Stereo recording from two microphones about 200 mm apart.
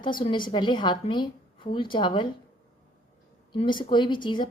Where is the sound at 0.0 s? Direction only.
25° left (ahead or behind).